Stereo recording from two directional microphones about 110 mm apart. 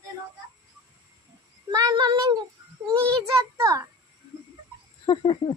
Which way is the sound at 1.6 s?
35° right (ahead or behind).